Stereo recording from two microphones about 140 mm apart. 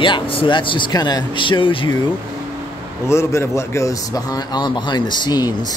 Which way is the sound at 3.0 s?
20° left (ahead or behind).